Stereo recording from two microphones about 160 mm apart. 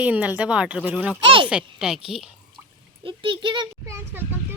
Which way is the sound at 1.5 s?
5° right (ahead or behind).